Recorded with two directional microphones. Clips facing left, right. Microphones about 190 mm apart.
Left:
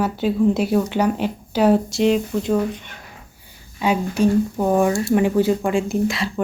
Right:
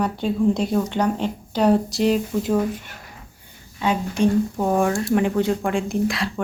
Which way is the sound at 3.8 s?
10° left (ahead or behind).